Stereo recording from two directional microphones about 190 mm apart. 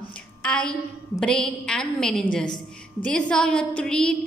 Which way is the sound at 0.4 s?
5° left (ahead or behind).